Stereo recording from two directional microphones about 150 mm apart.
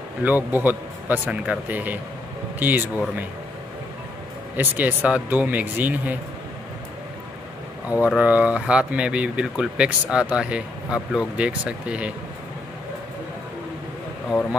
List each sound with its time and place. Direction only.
0.2 s speech: 10° right (ahead or behind)
4.6 s speech: 10° right (ahead or behind)
8.0 s speech: 10° right (ahead or behind)